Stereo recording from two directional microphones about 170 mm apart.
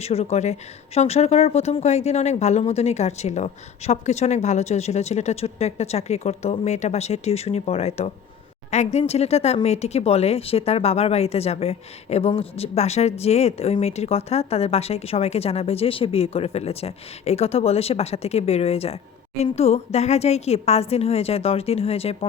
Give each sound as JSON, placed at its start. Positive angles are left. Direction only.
{"t": 0.0, "sound": "speech", "side_deg": 40}